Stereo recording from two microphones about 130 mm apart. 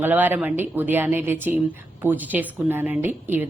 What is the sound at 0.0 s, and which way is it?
A woman's voice, 15° right (ahead or behind).